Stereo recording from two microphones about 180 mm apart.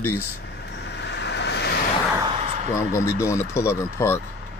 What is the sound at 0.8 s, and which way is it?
Vehicle, 70° left (ahead or behind).